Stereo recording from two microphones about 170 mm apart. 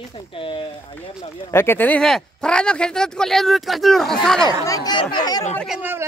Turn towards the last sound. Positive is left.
turn(degrees=-10)  # may be behind; listen again after turning